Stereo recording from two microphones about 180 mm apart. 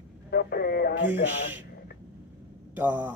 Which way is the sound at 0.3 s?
60° left (ahead or behind).